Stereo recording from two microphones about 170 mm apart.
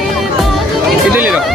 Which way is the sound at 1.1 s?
10° right (ahead or behind).